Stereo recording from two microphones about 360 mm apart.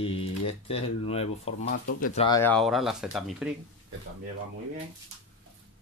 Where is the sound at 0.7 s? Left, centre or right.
Centre.